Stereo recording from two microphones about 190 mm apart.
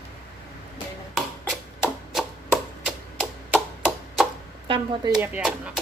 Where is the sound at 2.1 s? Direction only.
5° right (ahead or behind).